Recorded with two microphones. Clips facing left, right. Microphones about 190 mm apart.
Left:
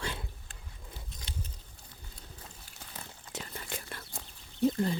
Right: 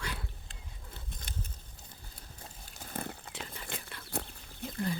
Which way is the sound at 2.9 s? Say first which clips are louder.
Right 10 dB; 60° right (ahead or behind).